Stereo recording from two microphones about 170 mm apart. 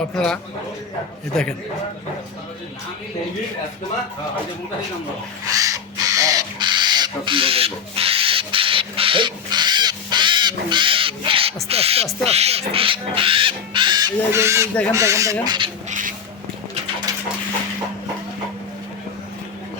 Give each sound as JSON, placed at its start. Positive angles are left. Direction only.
{"t": 0.1, "sound": "a man's voice", "side_deg": 0}
{"t": 5.5, "sound": "owl", "side_deg": -20}
{"t": 12.2, "sound": "speech", "side_deg": -40}
{"t": 15.9, "sound": "a sound", "side_deg": -50}